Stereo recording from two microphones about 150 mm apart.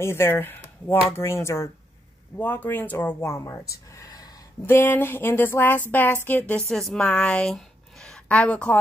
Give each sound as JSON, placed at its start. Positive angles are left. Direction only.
{"t": 0.0, "sound": "speech", "side_deg": 15}
{"t": 3.9, "sound": "a sound", "side_deg": 25}
{"t": 4.6, "sound": "a woman's voice", "side_deg": 15}